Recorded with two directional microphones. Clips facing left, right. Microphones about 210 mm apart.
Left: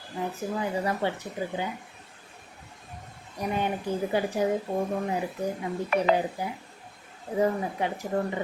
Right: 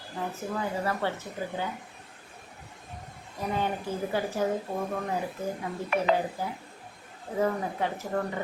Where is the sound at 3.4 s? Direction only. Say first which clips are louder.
Left 1 dB; 15° left (ahead or behind).